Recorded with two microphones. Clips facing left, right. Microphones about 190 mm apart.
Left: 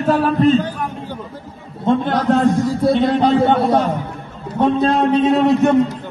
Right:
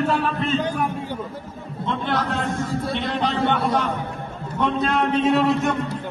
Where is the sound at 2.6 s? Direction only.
35° left (ahead or behind).